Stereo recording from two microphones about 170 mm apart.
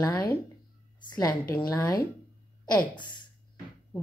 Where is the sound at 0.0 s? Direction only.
20° left (ahead or behind).